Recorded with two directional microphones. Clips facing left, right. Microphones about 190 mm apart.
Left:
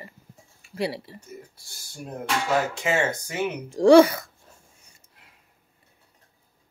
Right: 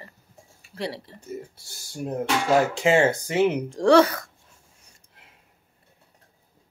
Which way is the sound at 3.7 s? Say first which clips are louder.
Left 5 dB; 10° left (ahead or behind).